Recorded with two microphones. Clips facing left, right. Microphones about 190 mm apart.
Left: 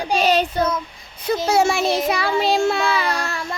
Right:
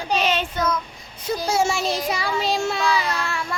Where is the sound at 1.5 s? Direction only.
60° left (ahead or behind).